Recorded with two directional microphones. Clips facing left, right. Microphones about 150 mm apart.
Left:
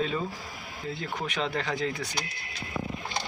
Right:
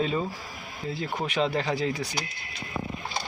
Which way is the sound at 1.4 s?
25° right (ahead or behind).